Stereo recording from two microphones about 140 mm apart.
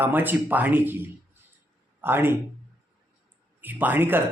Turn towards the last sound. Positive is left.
turn(degrees=-15)  # may be behind; listen again after turning